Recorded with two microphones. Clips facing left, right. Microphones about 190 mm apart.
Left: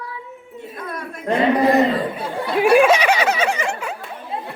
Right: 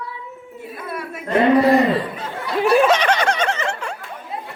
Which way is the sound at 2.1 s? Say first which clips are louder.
Left 2 dB; 10° left (ahead or behind).